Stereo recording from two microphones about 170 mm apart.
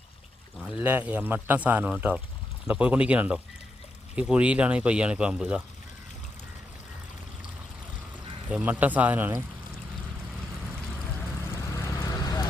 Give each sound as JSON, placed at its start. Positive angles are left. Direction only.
{"t": 0.8, "sound": "speech", "side_deg": -10}
{"t": 8.4, "sound": "speech", "side_deg": -10}
{"t": 11.2, "sound": "vehicle", "side_deg": 15}